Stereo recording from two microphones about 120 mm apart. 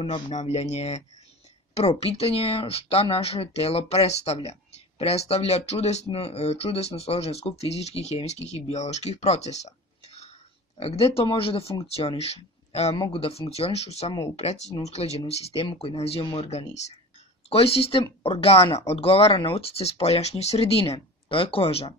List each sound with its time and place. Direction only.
0.3 s speech: 70° left (ahead or behind); by 16.4 s 50° left (ahead or behind)
16.4 s speech: 65° left (ahead or behind)
17.5 s speech: 55° left (ahead or behind)